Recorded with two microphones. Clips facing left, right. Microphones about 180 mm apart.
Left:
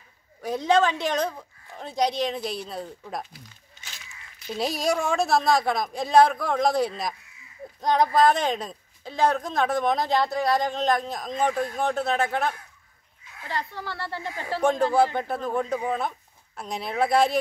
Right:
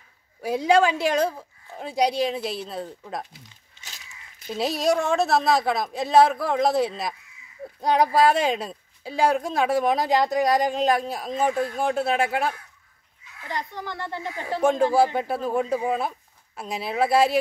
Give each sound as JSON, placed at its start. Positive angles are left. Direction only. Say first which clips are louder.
{"t": 0.4, "sound": "a woman's voice", "louder": "right 2 dB", "side_deg": -10}
{"t": 3.3, "sound": "a sound", "louder": "left 2 dB", "side_deg": -25}
{"t": 4.5, "sound": "a woman's voice", "louder": "right 3 dB", "side_deg": 0}